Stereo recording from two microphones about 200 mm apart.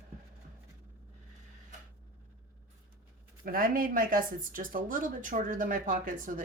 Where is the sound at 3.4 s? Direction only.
45° right (ahead or behind).